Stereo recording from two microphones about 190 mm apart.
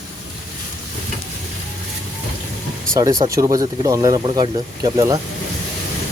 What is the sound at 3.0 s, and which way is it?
Speech, 20° right (ahead or behind).